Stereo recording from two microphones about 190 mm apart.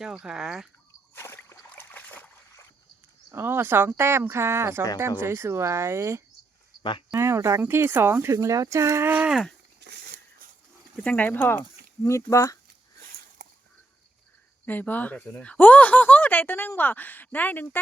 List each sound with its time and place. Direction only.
0.0 s speech: 5° right (ahead or behind)
1.1 s boat: 15° left (ahead or behind)
3.3 s speech: 10° right (ahead or behind)
9.8 s a sound: 55° right (ahead or behind)
11.0 s speech: 5° left (ahead or behind)
14.6 s speech: 10° left (ahead or behind)